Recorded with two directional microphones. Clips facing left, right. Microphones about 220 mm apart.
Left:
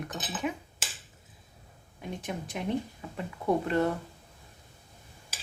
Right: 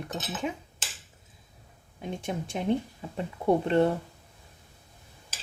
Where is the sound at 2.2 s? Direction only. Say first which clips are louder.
Right 4 dB; 25° right (ahead or behind).